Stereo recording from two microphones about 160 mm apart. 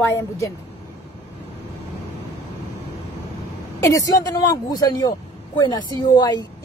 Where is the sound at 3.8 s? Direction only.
20° left (ahead or behind).